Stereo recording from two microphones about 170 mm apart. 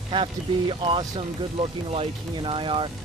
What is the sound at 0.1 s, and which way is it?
Speech, 30° right (ahead or behind).